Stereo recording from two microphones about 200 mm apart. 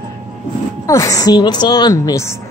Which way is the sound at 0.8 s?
15° left (ahead or behind).